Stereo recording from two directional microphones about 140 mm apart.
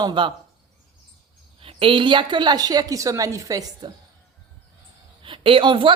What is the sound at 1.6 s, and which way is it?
Speech, 40° right (ahead or behind).